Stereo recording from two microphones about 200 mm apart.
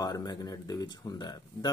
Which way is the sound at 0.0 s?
20° left (ahead or behind).